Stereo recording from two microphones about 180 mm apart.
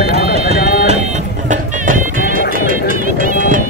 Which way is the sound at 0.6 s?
60° left (ahead or behind).